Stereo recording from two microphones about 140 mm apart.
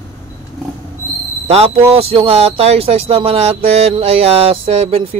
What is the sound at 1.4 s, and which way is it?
Speech, 45° right (ahead or behind).